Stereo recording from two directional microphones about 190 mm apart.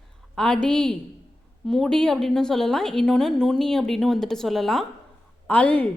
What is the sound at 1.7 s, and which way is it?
A woman's voice, 5° left (ahead or behind).